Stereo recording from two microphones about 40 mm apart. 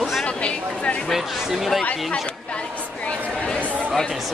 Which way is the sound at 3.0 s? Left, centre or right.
Left.